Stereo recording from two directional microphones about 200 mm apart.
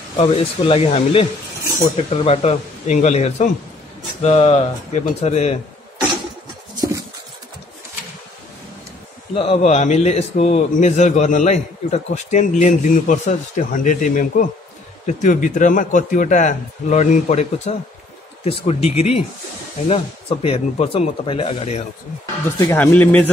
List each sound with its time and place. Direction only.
0.2 s a man's voice: 30° left (ahead or behind)
2.2 s a man's voice: 30° left (ahead or behind)
9.3 s a man's voice: 30° left (ahead or behind)
22.7 s speech: 10° left (ahead or behind)